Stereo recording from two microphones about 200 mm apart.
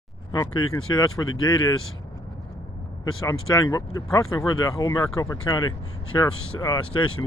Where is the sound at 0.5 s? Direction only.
90° left.